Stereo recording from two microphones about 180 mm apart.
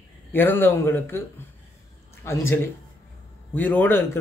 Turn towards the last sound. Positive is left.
turn(degrees=10)  # may be behind; listen again after turning